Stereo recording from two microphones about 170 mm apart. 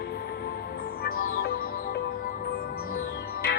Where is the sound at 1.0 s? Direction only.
65° left (ahead or behind).